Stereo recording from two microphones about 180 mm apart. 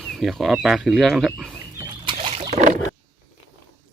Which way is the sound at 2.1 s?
35° right (ahead or behind).